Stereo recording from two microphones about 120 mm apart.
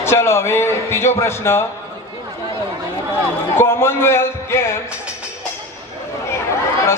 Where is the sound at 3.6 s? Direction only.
20° left (ahead or behind).